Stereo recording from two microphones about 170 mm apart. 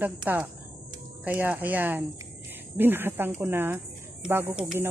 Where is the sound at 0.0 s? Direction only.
10° right (ahead or behind).